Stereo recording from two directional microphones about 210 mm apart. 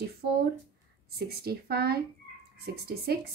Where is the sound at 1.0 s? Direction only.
50° right (ahead or behind).